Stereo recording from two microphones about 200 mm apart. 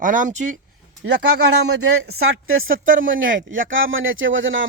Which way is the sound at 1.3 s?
90° right.